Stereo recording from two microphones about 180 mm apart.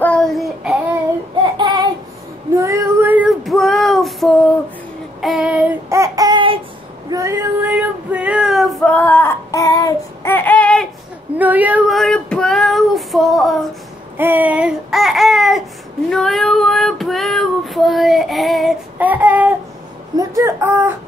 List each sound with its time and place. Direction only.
0.0 s child singing: 5° left (ahead or behind)
1.4 s child singing: 25° right (ahead or behind)
7.1 s child singing: 15° right (ahead or behind); by 10.9 s 5° left (ahead or behind)
11.3 s child singing: 10° right (ahead or behind)
14.1 s babbling: 10° right (ahead or behind)
16.1 s child singing: centre (ahead or behind)